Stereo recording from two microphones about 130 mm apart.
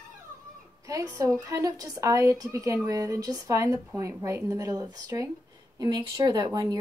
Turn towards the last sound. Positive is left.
turn(degrees=-30)  # may be behind; listen again after turning